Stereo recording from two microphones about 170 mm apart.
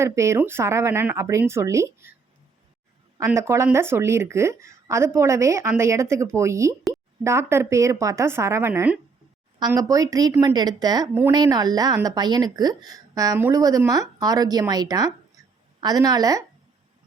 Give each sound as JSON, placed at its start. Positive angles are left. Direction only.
{"t": 0.0, "sound": "speech", "side_deg": -15}
{"t": 3.2, "sound": "a woman's voice", "side_deg": -15}